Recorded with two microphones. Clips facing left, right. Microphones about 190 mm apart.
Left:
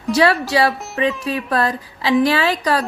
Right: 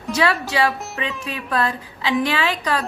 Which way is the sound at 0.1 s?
35° left (ahead or behind).